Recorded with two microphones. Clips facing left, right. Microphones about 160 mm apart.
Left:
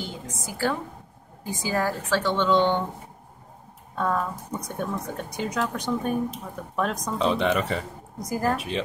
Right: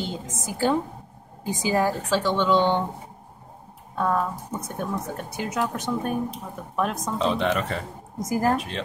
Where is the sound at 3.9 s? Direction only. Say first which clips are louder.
Right 2 dB; 5° right (ahead or behind).